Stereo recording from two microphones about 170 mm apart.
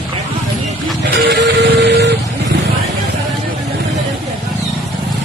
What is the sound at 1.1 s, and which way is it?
Vehicle, 75° right (ahead or behind).